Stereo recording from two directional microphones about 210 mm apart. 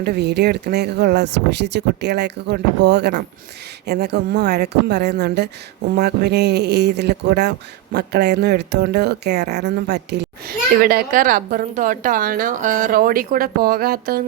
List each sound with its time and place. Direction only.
0.0 s a woman's voice: 50° right (ahead or behind)
10.8 s a woman's voice: 45° right (ahead or behind)